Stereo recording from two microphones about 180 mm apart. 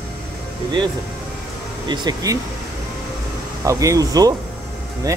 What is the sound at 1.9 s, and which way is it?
Speech, 20° right (ahead or behind).